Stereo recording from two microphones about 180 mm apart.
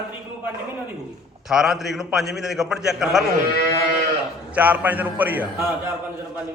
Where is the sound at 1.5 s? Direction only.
Centre (ahead or behind).